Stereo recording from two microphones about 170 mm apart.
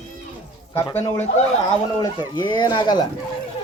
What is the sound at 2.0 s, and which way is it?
Speech, 25° left (ahead or behind).